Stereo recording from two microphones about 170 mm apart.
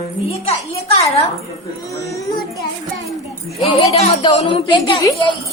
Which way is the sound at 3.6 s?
35° left (ahead or behind).